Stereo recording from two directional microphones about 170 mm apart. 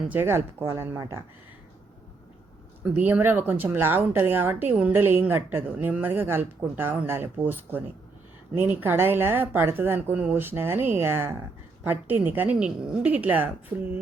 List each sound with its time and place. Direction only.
0.1 s speech: 15° right (ahead or behind)
2.8 s speech: 10° right (ahead or behind)